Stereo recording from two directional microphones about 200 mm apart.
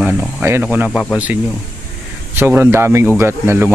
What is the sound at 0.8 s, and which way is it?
Speech, 5° left (ahead or behind).